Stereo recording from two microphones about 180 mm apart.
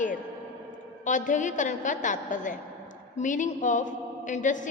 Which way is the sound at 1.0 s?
45° left (ahead or behind).